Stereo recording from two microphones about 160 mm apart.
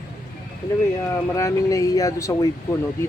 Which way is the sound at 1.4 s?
20° left (ahead or behind).